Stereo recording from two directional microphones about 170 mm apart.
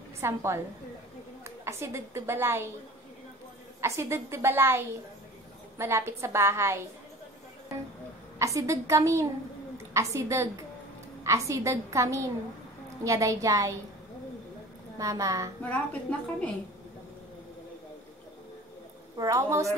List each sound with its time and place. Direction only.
0.2 s a woman's voice: 15° right (ahead or behind)
3.8 s a woman's voice: 15° right (ahead or behind)
8.4 s a woman's voice: 20° right (ahead or behind)
15.0 s a child's voice: 20° right (ahead or behind)
15.6 s a woman's voice: 10° left (ahead or behind)
19.1 s a child's voice: 20° right (ahead or behind)